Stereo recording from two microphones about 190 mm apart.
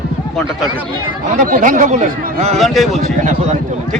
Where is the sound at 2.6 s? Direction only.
Centre (ahead or behind).